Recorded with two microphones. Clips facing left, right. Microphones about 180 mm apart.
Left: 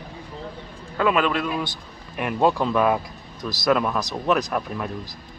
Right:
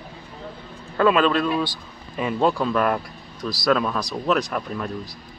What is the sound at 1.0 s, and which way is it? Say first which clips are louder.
Speech: right 3 dB; 15° left (ahead or behind).